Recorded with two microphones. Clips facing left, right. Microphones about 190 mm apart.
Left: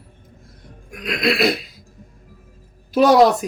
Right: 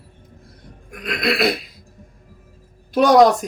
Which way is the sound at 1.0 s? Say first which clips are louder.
Left 1 dB; centre (ahead or behind).